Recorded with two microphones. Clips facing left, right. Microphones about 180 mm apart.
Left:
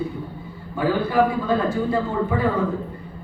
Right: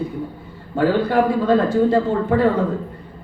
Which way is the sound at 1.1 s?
80° right.